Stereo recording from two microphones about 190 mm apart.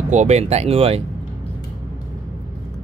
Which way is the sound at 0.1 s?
35° right (ahead or behind).